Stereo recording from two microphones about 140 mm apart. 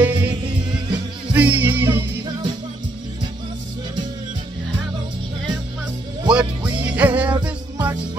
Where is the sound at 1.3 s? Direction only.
10° right (ahead or behind).